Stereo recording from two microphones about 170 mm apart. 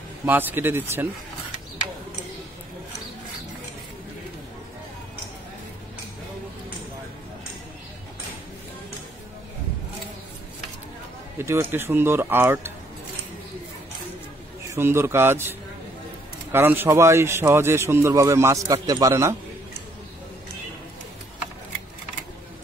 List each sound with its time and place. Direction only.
0.2 s a man's voice: 10° right (ahead or behind)
11.3 s a man's voice: 15° right (ahead or behind)
14.7 s a man's voice: 15° right (ahead or behind)
16.5 s a man's voice: 10° right (ahead or behind)